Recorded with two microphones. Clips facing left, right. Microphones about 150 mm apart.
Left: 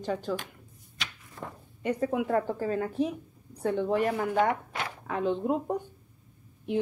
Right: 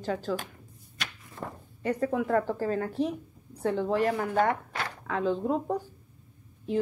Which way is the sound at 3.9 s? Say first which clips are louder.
Right 1 dB; 15° left (ahead or behind).